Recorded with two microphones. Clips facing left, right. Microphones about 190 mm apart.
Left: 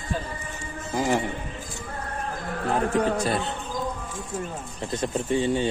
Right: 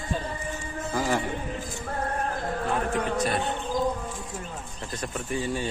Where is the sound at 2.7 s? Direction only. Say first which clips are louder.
Left 6 dB; 35° left (ahead or behind).